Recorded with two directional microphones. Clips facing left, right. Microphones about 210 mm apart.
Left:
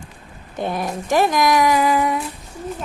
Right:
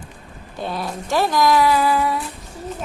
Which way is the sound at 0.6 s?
20° left (ahead or behind).